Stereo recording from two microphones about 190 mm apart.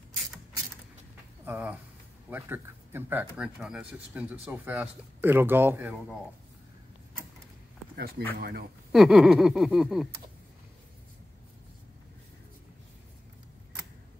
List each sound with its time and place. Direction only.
1.4 s speech: 10° right (ahead or behind)
7.9 s speech: 55° right (ahead or behind)
8.9 s a sound: centre (ahead or behind)